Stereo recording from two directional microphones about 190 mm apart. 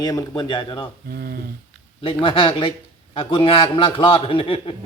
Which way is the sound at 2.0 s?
25° left (ahead or behind).